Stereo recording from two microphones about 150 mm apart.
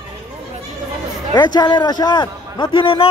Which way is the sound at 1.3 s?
30° left (ahead or behind).